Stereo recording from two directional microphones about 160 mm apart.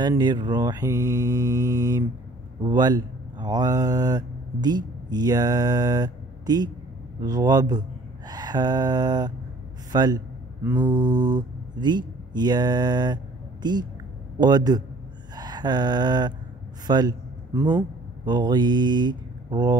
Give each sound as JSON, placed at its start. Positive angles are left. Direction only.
{"t": 0.0, "sound": "mantra", "side_deg": -25}
{"t": 2.6, "sound": "speech", "side_deg": -25}
{"t": 7.2, "sound": "mantra", "side_deg": -25}
{"t": 11.1, "sound": "mantra", "side_deg": -50}
{"t": 11.3, "sound": "speech", "side_deg": -25}
{"t": 14.4, "sound": "mantra", "side_deg": -25}
{"t": 15.3, "sound": "a sound", "side_deg": -25}
{"t": 16.8, "sound": "a man's voice", "side_deg": -25}